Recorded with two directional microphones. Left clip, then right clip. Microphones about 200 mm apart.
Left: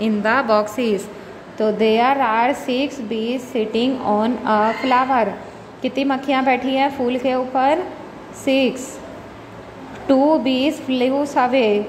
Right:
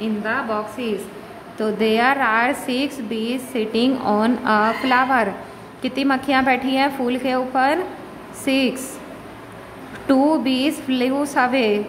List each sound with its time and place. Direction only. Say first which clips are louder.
0.0 s a woman's voice: left 5 dB; 40° left (ahead or behind)
1.6 s a woman's voice: left 2 dB; 5° left (ahead or behind)
10.0 s a woman's voice: left 2 dB; 5° right (ahead or behind)